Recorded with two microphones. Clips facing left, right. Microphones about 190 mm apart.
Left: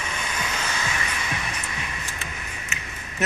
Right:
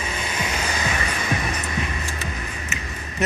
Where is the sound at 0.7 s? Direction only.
40° right (ahead or behind).